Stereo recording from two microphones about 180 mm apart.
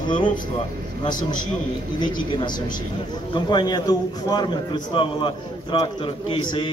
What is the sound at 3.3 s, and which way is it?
A man's voice, 25° left (ahead or behind).